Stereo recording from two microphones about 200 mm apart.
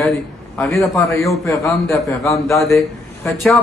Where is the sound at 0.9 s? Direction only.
15° left (ahead or behind).